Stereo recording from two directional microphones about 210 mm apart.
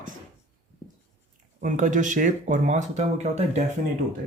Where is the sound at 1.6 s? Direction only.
40° right (ahead or behind).